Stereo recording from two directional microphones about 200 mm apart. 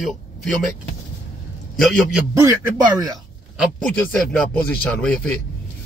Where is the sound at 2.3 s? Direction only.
15° right (ahead or behind).